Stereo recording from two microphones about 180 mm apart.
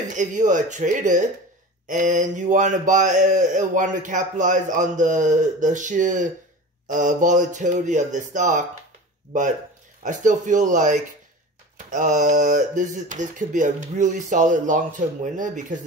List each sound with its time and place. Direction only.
0.1 s speech: 45° right (ahead or behind)
10.0 s speech: 45° right (ahead or behind)